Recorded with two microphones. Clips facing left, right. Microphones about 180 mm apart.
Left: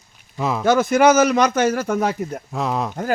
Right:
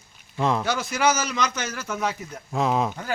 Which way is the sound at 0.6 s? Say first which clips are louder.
Left 9 dB; 50° left (ahead or behind).